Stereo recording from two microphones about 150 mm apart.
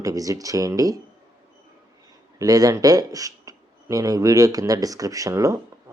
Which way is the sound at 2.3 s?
25° right (ahead or behind).